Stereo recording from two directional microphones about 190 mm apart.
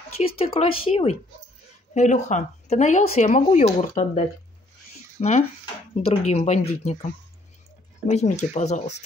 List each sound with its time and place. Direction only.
0.1 s speech: 30° left (ahead or behind)
8.1 s speech: 35° left (ahead or behind)